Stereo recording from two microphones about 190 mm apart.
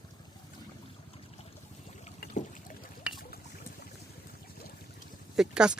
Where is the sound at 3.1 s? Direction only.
5° right (ahead or behind).